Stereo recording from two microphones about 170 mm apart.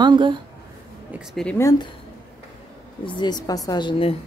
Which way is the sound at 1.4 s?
15° left (ahead or behind).